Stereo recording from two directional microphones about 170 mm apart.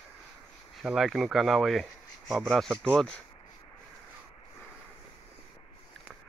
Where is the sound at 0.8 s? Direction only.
Centre (ahead or behind).